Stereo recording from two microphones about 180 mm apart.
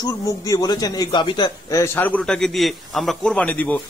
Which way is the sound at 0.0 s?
20° left (ahead or behind).